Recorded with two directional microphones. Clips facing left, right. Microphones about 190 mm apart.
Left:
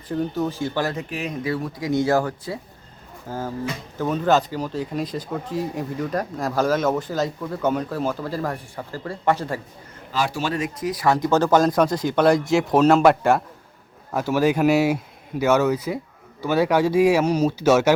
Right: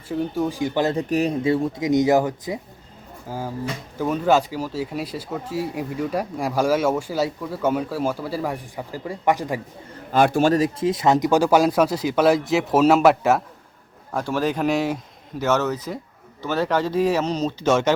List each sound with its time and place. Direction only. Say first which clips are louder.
0.1 s speech: even; 10° right (ahead or behind)
0.9 s speech: right 8 dB; 35° right (ahead or behind)
1.5 s speech: right 5 dB; 25° right (ahead or behind)
10.1 s speech: right 7 dB; 55° right (ahead or behind); by 17.9 s 10° left (ahead or behind)